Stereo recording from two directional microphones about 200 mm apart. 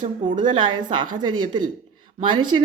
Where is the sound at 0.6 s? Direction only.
25° right (ahead or behind).